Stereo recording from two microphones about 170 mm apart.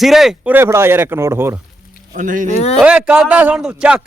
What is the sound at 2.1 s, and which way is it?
Speech, 50° right (ahead or behind).